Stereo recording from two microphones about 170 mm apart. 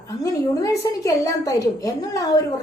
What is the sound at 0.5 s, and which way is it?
A woman's voice, 20° left (ahead or behind).